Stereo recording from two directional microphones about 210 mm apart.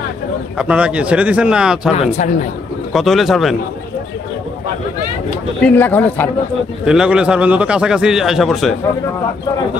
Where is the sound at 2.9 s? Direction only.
Centre (ahead or behind).